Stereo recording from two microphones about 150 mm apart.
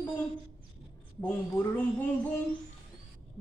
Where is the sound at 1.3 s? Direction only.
15° left (ahead or behind).